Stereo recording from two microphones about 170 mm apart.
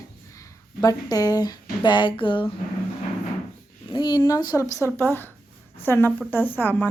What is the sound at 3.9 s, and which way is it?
A woman's voice, 25° left (ahead or behind).